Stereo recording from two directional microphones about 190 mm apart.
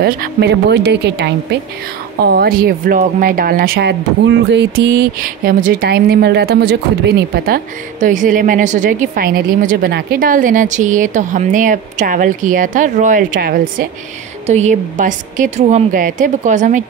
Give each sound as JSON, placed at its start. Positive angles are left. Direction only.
{"t": 0.0, "sound": "a woman's voice", "side_deg": -60}
{"t": 2.2, "sound": "speech", "side_deg": -55}
{"t": 14.4, "sound": "a woman's voice", "side_deg": -35}